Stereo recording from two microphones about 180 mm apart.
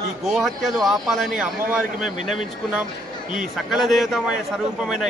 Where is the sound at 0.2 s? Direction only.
Centre (ahead or behind).